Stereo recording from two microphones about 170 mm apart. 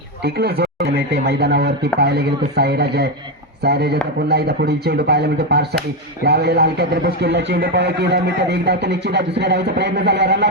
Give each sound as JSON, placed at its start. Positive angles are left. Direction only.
{"t": 0.2, "sound": "speech", "side_deg": -70}